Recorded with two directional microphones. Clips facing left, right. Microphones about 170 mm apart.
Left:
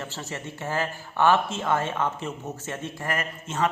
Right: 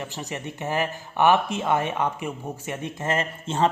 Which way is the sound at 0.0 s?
15° right (ahead or behind).